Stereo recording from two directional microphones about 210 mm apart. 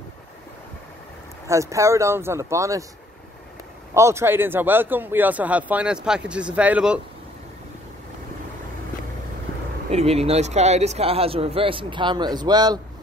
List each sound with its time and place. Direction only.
1.5 s a man's voice: 15° right (ahead or behind)
3.9 s a man's voice: 15° right (ahead or behind)
9.8 s speech: 30° right (ahead or behind)